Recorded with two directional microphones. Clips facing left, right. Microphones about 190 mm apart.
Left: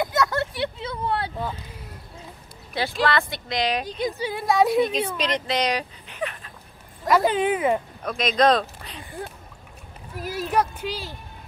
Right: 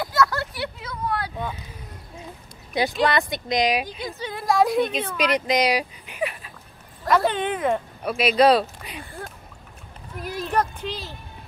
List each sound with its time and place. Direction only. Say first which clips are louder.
0.0 s a sound: even; 20° left (ahead or behind)
2.8 s speech: right 2 dB; 15° right (ahead or behind)
4.0 s a woman's voice: left 5 dB; 10° left (ahead or behind)
5.1 s speech: right 3 dB; 10° right (ahead or behind)
7.1 s a woman's voice: left 2 dB; 5° left (ahead or behind)
8.0 s speech: right 4 dB; 10° right (ahead or behind)
10.2 s speech: left 1 dB; 5° left (ahead or behind)